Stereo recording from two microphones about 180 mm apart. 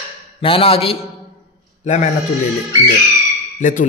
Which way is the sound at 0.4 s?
30° left (ahead or behind).